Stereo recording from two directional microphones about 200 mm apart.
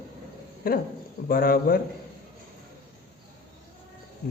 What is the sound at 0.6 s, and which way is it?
Speech, 45° left (ahead or behind).